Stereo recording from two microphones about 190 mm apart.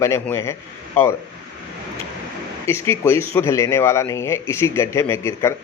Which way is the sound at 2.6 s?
15° left (ahead or behind).